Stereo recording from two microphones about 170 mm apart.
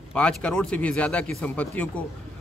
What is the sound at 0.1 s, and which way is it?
A man's voice, 5° left (ahead or behind).